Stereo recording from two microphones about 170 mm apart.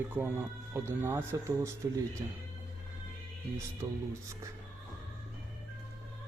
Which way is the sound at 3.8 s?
20° right (ahead or behind).